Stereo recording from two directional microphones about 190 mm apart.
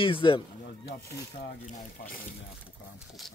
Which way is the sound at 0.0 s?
25° left (ahead or behind).